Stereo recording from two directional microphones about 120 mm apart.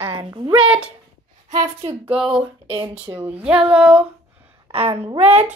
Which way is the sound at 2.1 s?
5° right (ahead or behind).